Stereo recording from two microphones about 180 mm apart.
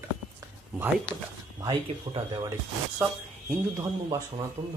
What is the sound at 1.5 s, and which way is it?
Speech, 20° right (ahead or behind).